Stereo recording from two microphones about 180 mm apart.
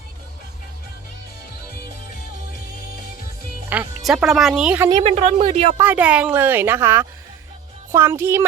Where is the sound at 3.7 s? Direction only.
5° right (ahead or behind).